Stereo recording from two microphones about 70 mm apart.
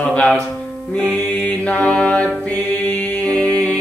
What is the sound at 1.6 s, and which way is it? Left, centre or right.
Mantra, centre.